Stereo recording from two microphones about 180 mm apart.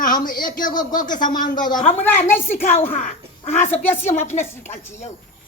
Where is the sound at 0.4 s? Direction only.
45° left (ahead or behind).